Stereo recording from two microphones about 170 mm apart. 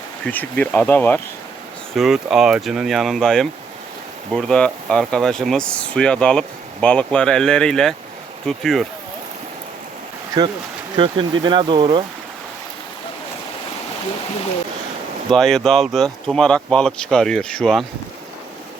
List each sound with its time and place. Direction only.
0.6 s speech: 10° left (ahead or behind)
2.0 s speech: centre (ahead or behind)
10.9 s speech: 30° right (ahead or behind)
15.3 s speech: centre (ahead or behind)